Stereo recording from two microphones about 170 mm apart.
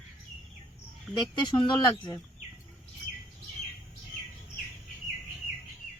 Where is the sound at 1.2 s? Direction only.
25° left (ahead or behind).